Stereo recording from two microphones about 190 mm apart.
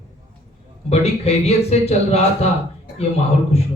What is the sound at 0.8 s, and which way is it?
A man's voice, 35° left (ahead or behind).